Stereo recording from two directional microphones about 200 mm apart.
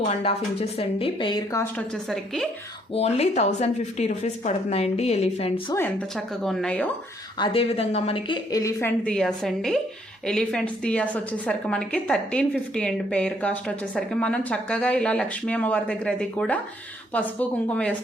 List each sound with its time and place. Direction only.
0.1 s speech: 30° left (ahead or behind)
2.0 s a woman's voice: centre (ahead or behind)
2.9 s speech: 30° left (ahead or behind)
5.7 s a woman's voice: 5° left (ahead or behind)
7.3 s speech: 25° left (ahead or behind)
9.0 s a woman's voice: 5° left (ahead or behind)